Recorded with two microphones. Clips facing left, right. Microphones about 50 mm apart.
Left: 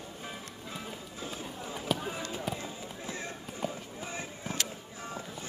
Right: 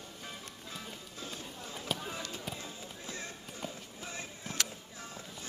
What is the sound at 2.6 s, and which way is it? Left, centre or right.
Run, left.